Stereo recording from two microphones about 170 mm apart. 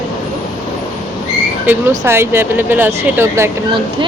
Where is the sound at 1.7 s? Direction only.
10° right (ahead or behind).